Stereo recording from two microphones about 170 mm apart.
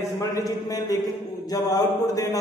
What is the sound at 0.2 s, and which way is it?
Speech, 20° left (ahead or behind).